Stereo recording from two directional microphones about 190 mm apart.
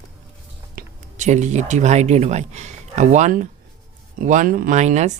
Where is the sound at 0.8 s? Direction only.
40° right (ahead or behind).